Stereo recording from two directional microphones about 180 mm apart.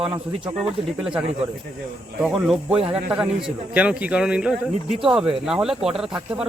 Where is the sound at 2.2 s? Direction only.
5° right (ahead or behind).